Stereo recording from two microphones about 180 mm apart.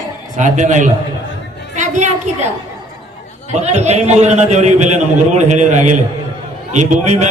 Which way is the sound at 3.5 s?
40° right (ahead or behind).